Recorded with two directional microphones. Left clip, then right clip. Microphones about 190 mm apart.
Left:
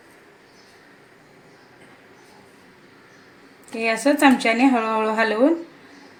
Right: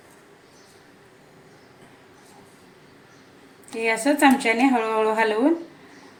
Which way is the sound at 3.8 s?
25° left (ahead or behind).